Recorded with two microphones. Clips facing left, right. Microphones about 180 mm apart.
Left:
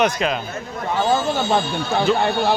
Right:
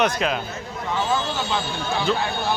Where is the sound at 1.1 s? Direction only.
50° left (ahead or behind).